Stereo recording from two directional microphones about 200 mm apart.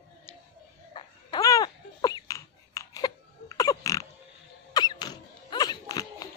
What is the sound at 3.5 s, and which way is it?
Pig, 15° left (ahead or behind).